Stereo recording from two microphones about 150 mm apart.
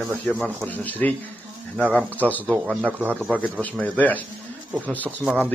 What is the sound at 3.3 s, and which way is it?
A man's voice, 10° left (ahead or behind).